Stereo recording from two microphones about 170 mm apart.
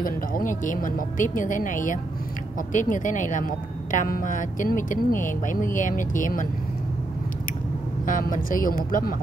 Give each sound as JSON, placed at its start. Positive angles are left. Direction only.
{"t": 0.0, "sound": "a woman's voice", "side_deg": 55}
{"t": 8.0, "sound": "speech", "side_deg": 50}